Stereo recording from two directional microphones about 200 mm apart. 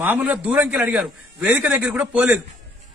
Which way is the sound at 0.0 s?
10° right (ahead or behind).